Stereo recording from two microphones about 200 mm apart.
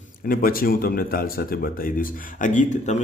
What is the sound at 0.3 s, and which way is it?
Speech, 45° left (ahead or behind).